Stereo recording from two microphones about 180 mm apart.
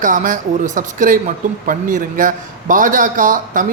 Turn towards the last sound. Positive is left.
turn(degrees=-45)  # may be behind; listen again after turning